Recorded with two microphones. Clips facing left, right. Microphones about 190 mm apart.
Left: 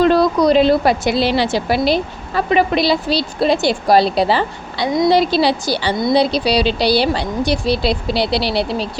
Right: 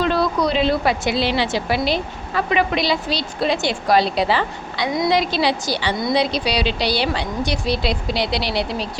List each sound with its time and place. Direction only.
0.0 s a woman's voice: 40° left (ahead or behind)